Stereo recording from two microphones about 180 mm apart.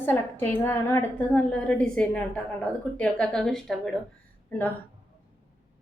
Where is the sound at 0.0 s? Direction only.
10° left (ahead or behind).